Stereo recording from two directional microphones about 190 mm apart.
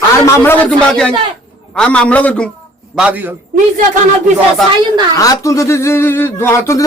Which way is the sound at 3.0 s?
10° right (ahead or behind).